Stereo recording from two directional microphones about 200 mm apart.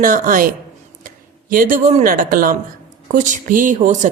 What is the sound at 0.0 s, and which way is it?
A woman's voice, 40° right (ahead or behind).